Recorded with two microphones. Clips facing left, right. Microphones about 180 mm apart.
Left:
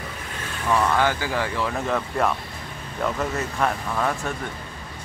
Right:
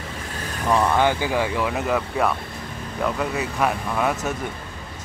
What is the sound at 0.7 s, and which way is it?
Speech, 15° right (ahead or behind).